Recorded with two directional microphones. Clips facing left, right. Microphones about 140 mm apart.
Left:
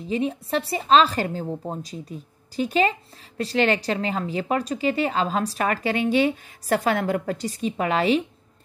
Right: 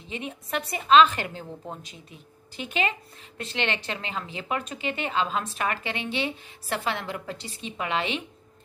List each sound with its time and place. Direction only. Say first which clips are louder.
0.1 s a woman's voice: left 8 dB; 35° left (ahead or behind)